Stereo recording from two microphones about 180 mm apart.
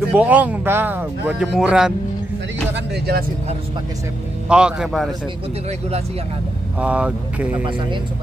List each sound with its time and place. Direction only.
0.1 s speech: 10° right (ahead or behind)
2.7 s speech: 60° right (ahead or behind)
4.5 s speech: 5° right (ahead or behind)
6.8 s speech: 5° right (ahead or behind)